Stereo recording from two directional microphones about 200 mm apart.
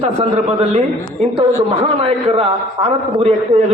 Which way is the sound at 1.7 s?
30° right (ahead or behind).